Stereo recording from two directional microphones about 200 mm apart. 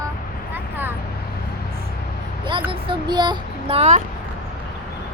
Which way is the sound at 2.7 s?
25° right (ahead or behind).